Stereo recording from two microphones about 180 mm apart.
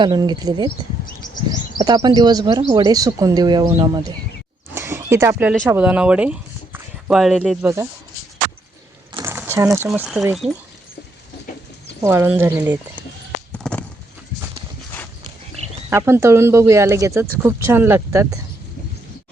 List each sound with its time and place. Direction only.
0.0 s speech: 25° right (ahead or behind)
1.8 s speech: 20° right (ahead or behind)
2.6 s speech: 35° right (ahead or behind)
2.8 s speech: 20° right (ahead or behind)
4.7 s a sound: 15° right (ahead or behind)
5.6 s speech: 10° right (ahead or behind)
9.2 s a sound: 15° right (ahead or behind)
9.9 s speech: centre (ahead or behind)
12.0 s speech: 15° right (ahead or behind)
13.5 s a sound: 5° left (ahead or behind)
15.9 s speech: 15° right (ahead or behind)